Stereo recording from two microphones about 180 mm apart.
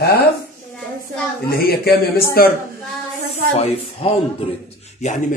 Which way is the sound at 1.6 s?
60° left (ahead or behind).